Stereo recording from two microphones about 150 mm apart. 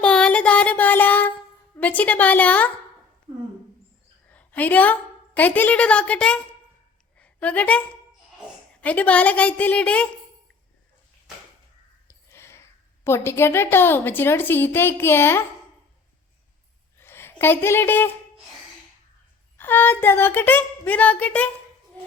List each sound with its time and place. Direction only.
0.0 s a sound: 5° left (ahead or behind)
1.8 s a woman's voice: 10° left (ahead or behind)
4.3 s a woman's voice: 10° left (ahead or behind)
7.2 s a sound: 10° left (ahead or behind)
8.8 s a woman's voice: 10° left (ahead or behind)
12.0 s a sound: 15° left (ahead or behind)
13.1 s a woman's voice: 15° left (ahead or behind)
17.0 s a woman's voice: 15° left (ahead or behind)
19.5 s a woman's voice: 15° left (ahead or behind)